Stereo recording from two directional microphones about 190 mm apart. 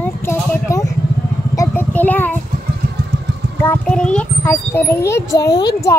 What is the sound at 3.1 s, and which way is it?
Vehicle, 60° right (ahead or behind).